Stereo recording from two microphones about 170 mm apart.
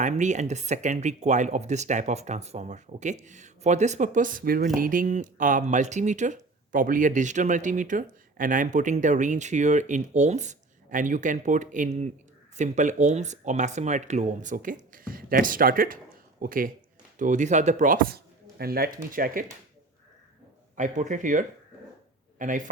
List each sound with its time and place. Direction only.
0.0 s speech: 45° right (ahead or behind)
20.7 s speech: 45° right (ahead or behind)